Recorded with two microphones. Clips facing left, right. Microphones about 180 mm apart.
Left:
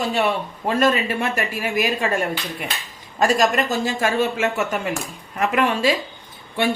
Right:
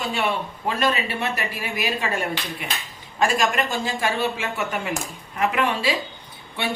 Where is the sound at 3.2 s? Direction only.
40° left (ahead or behind).